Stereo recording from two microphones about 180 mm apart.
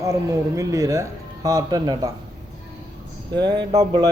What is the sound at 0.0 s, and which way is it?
A man's voice, 15° right (ahead or behind).